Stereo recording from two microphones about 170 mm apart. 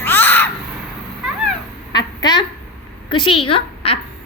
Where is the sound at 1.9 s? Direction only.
25° left (ahead or behind).